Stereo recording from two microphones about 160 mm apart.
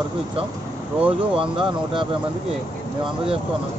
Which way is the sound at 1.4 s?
30° right (ahead or behind).